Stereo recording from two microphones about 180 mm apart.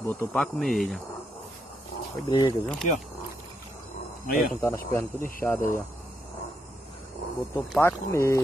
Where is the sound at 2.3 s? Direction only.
25° left (ahead or behind).